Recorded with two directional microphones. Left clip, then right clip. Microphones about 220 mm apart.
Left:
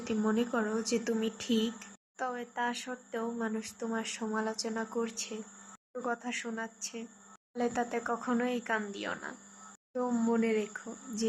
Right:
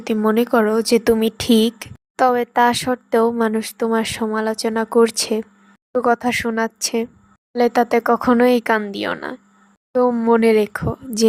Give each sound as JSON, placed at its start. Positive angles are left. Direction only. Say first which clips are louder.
{"t": 0.0, "sound": "speech", "louder": "right 14 dB", "side_deg": -40}